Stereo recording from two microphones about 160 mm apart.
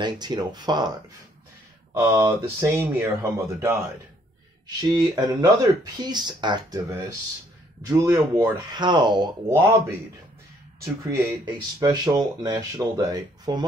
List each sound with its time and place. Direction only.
0.0 s speech: 25° right (ahead or behind)
2.0 s speech: 15° right (ahead or behind)
9.5 s speech: 15° right (ahead or behind)